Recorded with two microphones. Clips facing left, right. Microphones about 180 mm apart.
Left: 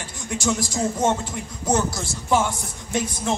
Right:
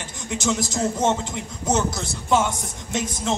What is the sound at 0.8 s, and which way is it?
Speech, 10° left (ahead or behind).